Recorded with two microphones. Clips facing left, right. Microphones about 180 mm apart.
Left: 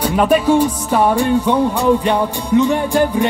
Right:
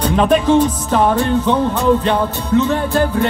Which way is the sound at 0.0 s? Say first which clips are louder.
Even; 10° left (ahead or behind).